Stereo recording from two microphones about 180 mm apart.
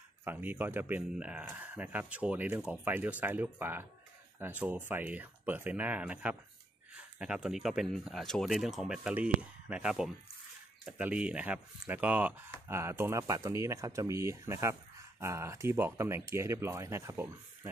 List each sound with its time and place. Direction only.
0.2 s speech: 10° right (ahead or behind)